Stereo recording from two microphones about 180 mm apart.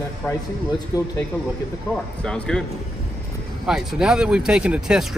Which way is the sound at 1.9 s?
5° left (ahead or behind).